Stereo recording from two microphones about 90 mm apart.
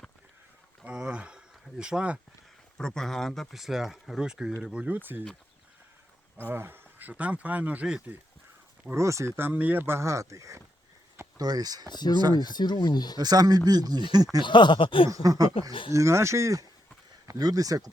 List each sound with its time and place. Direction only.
0.9 s a sound: 15° right (ahead or behind)
1.8 s speech: 10° right (ahead or behind)
2.7 s speech: 5° left (ahead or behind); by 5.2 s 20° right (ahead or behind)
6.5 s speech: 25° right (ahead or behind)
9.0 s speech: 35° right (ahead or behind)
11.3 s speech: 45° right (ahead or behind)
11.9 s speech: 55° left (ahead or behind)
13.1 s speech: 45° right (ahead or behind)
14.4 s speech: 60° left (ahead or behind)
15.1 s speech: 40° right (ahead or behind)